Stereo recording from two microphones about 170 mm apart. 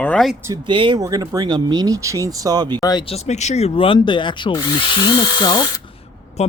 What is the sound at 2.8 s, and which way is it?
Speech, 25° left (ahead or behind).